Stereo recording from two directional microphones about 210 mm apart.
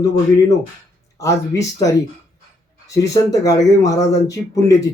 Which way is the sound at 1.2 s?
15° left (ahead or behind).